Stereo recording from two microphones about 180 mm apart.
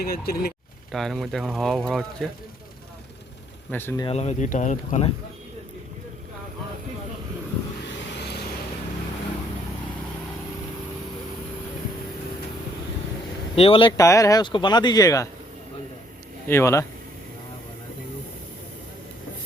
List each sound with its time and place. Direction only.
0.0 s speech: 60° left (ahead or behind)
0.9 s speech: centre (ahead or behind)
3.7 s speech: 10° left (ahead or behind)
4.0 s speech: 35° left (ahead or behind)
7.9 s vehicle: 65° left (ahead or behind)
13.6 s speech: 30° left (ahead or behind)
16.5 s speech: 15° left (ahead or behind)